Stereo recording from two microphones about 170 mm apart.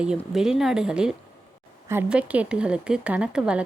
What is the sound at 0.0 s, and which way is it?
A woman's voice, 5° right (ahead or behind).